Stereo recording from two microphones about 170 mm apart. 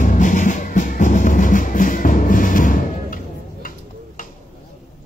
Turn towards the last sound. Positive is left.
turn(degrees=55)  # may be behind; listen again after turning